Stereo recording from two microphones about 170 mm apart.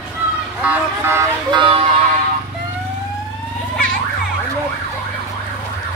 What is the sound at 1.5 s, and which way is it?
Speech, 30° right (ahead or behind).